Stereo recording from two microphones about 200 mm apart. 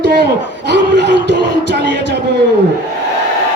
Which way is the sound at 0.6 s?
60° right (ahead or behind).